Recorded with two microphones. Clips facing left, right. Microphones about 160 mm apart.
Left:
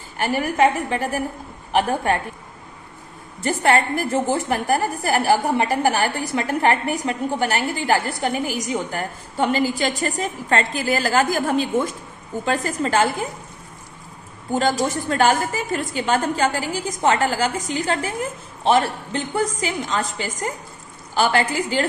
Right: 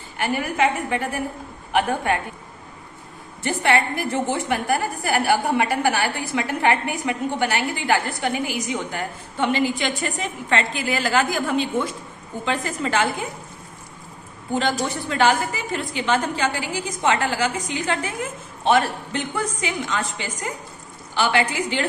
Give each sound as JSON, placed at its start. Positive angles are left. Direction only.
{"t": 0.2, "sound": "a woman's voice", "side_deg": 40}
{"t": 3.4, "sound": "a woman's voice", "side_deg": 45}
{"t": 14.5, "sound": "a woman's voice", "side_deg": 40}